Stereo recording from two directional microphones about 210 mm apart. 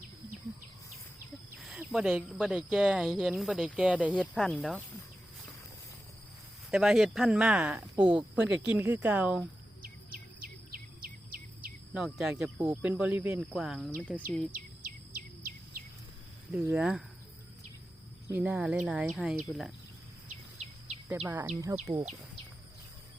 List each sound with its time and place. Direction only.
1.6 s speech: centre (ahead or behind)
6.7 s speech: centre (ahead or behind)
9.8 s insect: 40° right (ahead or behind)
11.9 s speech: centre (ahead or behind)
14.5 s insect: 40° right (ahead or behind)
16.6 s speech: 5° right (ahead or behind)
18.3 s speech: 10° right (ahead or behind)
21.1 s speech: 10° right (ahead or behind)